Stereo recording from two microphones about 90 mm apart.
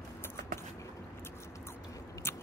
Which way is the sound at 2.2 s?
25° left (ahead or behind).